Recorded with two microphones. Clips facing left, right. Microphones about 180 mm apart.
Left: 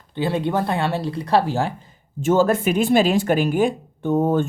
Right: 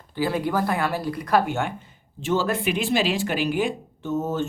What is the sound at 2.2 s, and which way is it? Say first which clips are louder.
Speech: left 6 dB; 45° left (ahead or behind).